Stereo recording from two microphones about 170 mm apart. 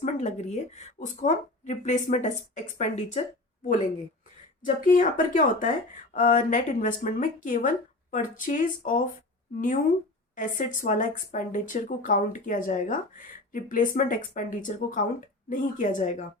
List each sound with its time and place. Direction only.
0.0 s speech: 45° left (ahead or behind)
4.6 s speech: 50° left (ahead or behind)